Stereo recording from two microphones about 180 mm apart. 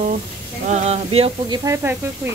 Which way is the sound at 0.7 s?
35° right (ahead or behind).